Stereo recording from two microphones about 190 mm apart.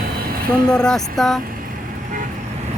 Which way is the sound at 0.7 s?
5° left (ahead or behind).